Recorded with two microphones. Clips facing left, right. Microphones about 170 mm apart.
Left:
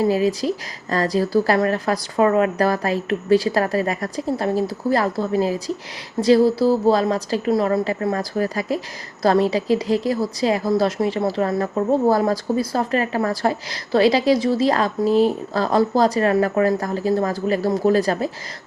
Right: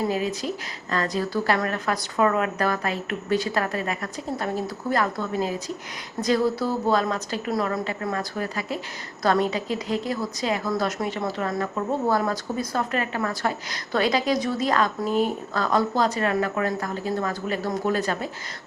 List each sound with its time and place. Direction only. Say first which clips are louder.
0.1 s a woman's voice: left 7 dB; 35° left (ahead or behind)